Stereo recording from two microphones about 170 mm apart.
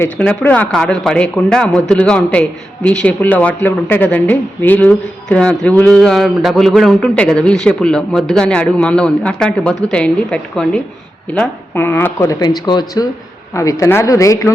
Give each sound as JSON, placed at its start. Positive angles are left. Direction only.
{"t": 0.0, "sound": "speech", "side_deg": 10}